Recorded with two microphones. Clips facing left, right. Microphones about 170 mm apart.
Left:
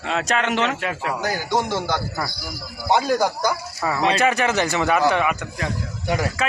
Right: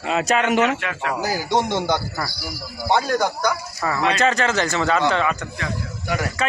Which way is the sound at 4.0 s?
30° left (ahead or behind).